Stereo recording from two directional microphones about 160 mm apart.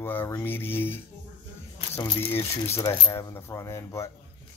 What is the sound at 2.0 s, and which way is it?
Speech, 15° left (ahead or behind).